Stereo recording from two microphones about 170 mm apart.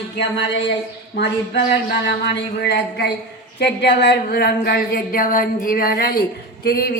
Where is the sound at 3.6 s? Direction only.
85° left.